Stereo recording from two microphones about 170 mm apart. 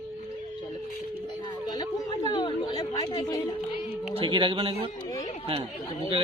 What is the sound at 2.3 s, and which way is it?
Chatter, 25° left (ahead or behind).